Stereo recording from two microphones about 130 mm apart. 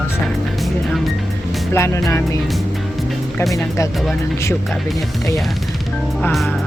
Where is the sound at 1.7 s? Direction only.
20° left (ahead or behind).